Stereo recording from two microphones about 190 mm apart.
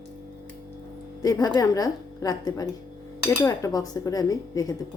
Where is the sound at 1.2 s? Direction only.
20° left (ahead or behind).